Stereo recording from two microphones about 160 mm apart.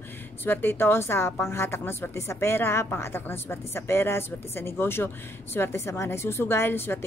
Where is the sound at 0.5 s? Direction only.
10° left (ahead or behind).